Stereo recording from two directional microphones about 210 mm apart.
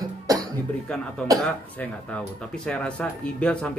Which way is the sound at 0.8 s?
5° left (ahead or behind).